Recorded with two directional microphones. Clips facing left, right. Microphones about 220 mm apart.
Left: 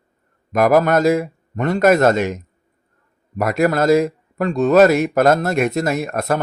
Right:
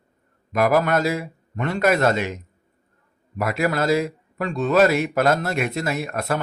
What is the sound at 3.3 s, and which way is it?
Speech, 45° left (ahead or behind).